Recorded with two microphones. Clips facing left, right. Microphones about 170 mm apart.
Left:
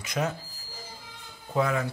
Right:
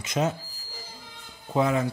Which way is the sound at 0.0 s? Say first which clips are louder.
Right 3 dB; 20° right (ahead or behind).